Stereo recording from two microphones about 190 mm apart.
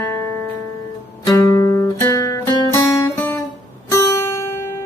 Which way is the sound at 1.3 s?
15° left (ahead or behind).